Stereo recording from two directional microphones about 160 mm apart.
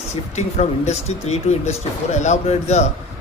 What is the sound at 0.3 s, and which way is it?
Speech, 45° left (ahead or behind).